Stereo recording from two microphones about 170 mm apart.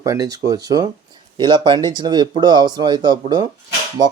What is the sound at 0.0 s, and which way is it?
Speech, 20° right (ahead or behind).